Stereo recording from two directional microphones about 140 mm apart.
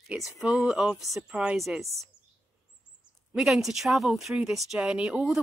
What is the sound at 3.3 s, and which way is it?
A woman's voice, centre (ahead or behind).